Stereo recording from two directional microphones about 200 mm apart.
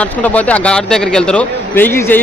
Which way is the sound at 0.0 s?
5° left (ahead or behind).